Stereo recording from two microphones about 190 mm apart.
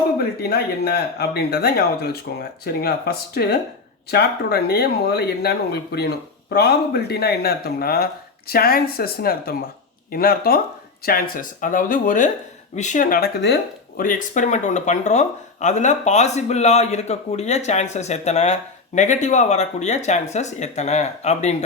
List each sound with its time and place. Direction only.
0.2 s speech: 55° left (ahead or behind); by 21.5 s 35° left (ahead or behind)